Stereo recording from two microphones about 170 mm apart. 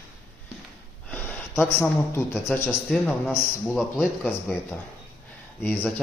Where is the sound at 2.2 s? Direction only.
15° left (ahead or behind).